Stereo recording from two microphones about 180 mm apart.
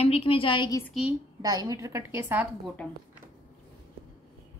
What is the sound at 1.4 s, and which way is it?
A woman's voice, 20° right (ahead or behind).